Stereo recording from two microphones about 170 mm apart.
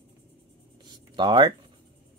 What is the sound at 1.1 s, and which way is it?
Speech, 25° right (ahead or behind).